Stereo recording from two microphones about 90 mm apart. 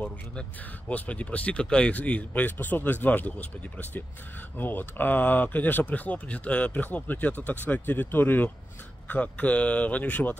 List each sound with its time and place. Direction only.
0.0 s speech: 15° left (ahead or behind)